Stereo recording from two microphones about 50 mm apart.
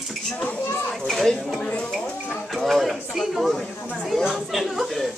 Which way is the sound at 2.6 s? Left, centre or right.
Centre.